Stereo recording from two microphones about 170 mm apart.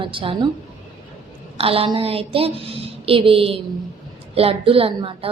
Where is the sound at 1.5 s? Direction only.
35° right (ahead or behind).